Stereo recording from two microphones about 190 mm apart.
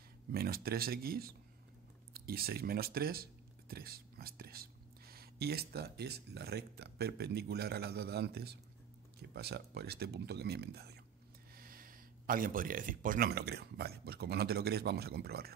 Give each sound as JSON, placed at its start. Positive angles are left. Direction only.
{"t": 0.3, "sound": "speech", "side_deg": -55}